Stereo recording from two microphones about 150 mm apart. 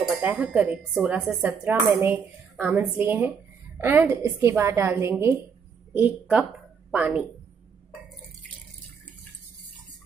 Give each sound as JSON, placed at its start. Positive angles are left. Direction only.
{"t": 0.2, "sound": "a woman's voice", "side_deg": -10}